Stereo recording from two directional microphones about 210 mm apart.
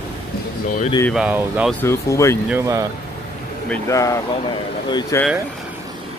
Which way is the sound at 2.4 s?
10° right (ahead or behind).